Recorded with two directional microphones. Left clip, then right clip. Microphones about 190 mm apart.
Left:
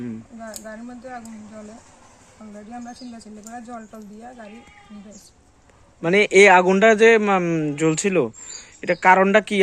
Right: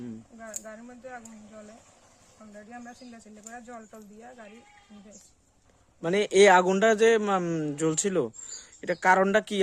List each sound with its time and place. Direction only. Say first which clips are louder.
0.4 s speech: left 6 dB; 15° right (ahead or behind)
2.4 s speech: left 7 dB; 10° right (ahead or behind)
6.0 s speech: left 7 dB; 15° right (ahead or behind)